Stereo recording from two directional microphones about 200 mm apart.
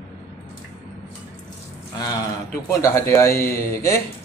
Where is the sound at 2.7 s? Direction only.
15° left (ahead or behind).